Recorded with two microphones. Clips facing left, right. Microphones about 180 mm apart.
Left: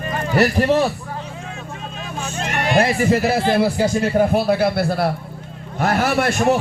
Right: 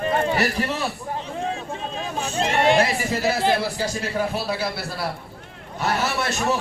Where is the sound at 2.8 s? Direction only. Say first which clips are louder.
Left 5 dB; 55° left (ahead or behind).